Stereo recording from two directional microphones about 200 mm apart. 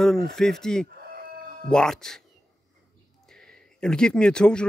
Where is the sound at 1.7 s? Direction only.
5° left (ahead or behind).